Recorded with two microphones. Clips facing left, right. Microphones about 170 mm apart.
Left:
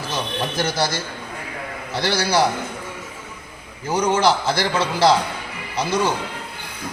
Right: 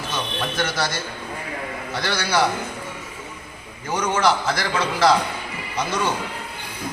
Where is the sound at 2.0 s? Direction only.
30° left (ahead or behind).